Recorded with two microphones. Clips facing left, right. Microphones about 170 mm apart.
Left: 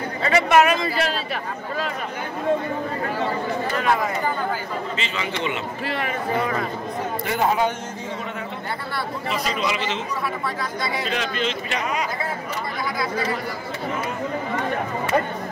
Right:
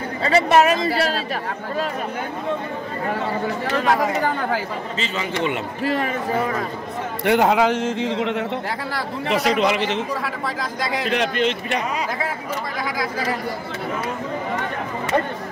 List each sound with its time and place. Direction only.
0.2 s a man's voice: 30° right (ahead or behind)
4.9 s a man's voice: 45° right (ahead or behind)
7.2 s a man's voice: 80° right; by 11.5 s 60° right (ahead or behind)